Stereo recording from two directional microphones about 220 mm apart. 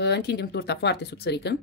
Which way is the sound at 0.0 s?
50° left (ahead or behind).